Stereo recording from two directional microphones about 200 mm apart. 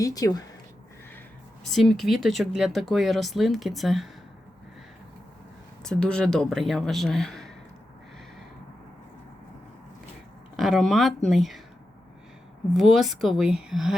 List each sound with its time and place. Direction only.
0.0 s speech: 20° left (ahead or behind)
1.7 s speech: centre (ahead or behind)
5.8 s speech: 5° left (ahead or behind)
10.6 s speech: centre (ahead or behind)
12.7 s speech: centre (ahead or behind)